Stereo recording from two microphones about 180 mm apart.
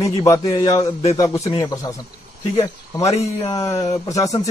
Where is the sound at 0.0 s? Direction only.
20° left (ahead or behind).